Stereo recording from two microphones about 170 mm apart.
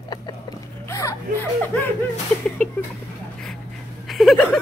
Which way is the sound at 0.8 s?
15° left (ahead or behind).